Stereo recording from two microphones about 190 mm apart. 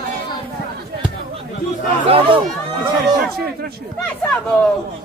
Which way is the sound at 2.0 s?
30° right (ahead or behind).